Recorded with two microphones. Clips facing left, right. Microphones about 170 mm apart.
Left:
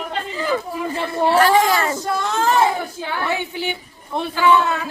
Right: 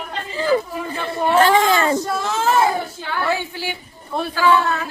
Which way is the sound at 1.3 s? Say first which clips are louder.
Right 1 dB; 25° right (ahead or behind).